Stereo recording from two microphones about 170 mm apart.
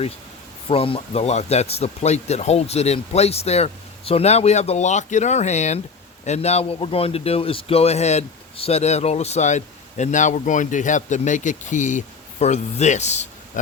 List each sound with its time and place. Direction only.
0.7 s a man's voice: 35° left (ahead or behind)